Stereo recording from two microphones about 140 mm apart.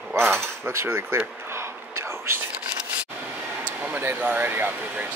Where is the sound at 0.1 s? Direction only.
15° right (ahead or behind).